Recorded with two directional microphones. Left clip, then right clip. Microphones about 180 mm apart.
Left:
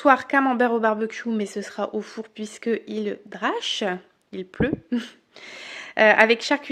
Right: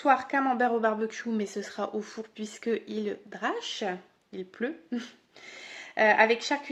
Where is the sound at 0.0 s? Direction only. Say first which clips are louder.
Left 6 dB; 50° left (ahead or behind).